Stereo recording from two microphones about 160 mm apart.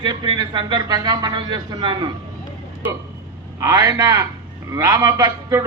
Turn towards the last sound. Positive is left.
turn(degrees=-20)  # may be behind; listen again after turning